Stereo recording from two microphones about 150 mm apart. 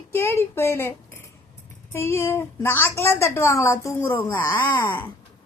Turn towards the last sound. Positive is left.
turn(degrees=15)  # may be behind; listen again after turning